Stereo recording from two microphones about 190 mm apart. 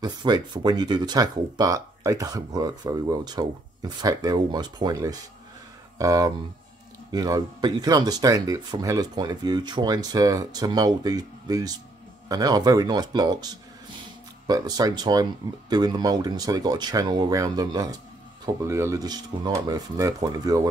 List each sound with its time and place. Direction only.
0.0 s speech: 20° right (ahead or behind)
14.5 s speech: 20° right (ahead or behind)